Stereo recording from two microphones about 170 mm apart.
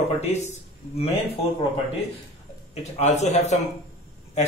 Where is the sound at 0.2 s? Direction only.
40° left (ahead or behind).